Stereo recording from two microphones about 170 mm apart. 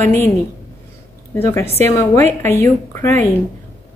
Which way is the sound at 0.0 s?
15° left (ahead or behind).